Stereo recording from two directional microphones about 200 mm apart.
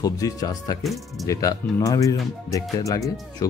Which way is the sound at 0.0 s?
20° left (ahead or behind).